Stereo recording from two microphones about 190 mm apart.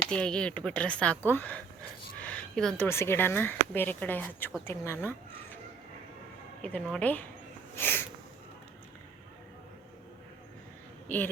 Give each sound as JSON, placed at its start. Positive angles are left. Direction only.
{"t": 0.1, "sound": "speech", "side_deg": 5}
{"t": 6.6, "sound": "speech", "side_deg": 5}